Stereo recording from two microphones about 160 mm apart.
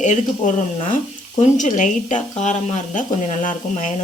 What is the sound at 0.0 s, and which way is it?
Speech, 50° left (ahead or behind).